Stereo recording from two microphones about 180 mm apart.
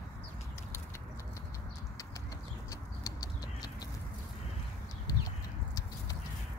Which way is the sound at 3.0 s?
20° left (ahead or behind).